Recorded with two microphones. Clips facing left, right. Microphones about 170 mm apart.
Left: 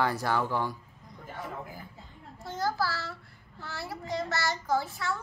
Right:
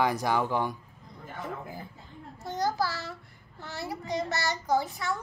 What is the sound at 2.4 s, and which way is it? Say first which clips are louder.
A child's voice: right 2 dB; 20° right (ahead or behind).